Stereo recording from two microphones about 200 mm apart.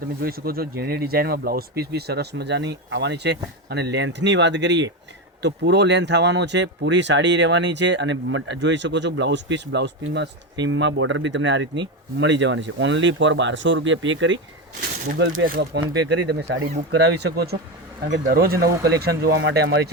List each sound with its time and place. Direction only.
0.2 s speech: 50° right (ahead or behind); by 14.3 s 70° right (ahead or behind)
15.0 s speech: 50° right (ahead or behind)
16.0 s speech: 60° right (ahead or behind)
16.6 s speech: 50° right (ahead or behind)